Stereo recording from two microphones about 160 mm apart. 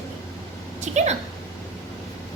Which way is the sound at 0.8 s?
45° right (ahead or behind).